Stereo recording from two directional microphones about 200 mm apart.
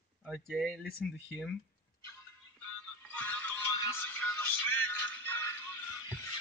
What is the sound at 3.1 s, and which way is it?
Music, 5° left (ahead or behind).